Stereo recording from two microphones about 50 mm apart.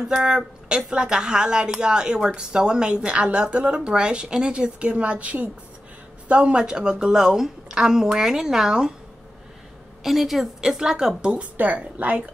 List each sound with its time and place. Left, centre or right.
0.1 s a woman's voice: centre
10.0 s a woman's voice: centre
11.5 s a woman's voice: right